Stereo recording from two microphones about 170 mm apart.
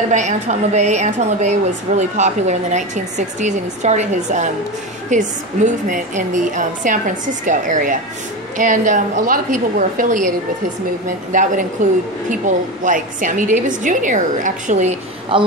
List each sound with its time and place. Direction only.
0.1 s a woman's voice: 45° right (ahead or behind)
11.3 s a woman's voice: 50° right (ahead or behind)
15.3 s a woman's voice: 30° right (ahead or behind)